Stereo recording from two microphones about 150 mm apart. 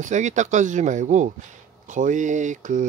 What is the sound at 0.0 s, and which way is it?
Speech, 55° right (ahead or behind).